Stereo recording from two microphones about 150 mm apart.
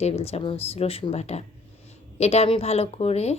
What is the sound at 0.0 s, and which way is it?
Speech, 45° left (ahead or behind).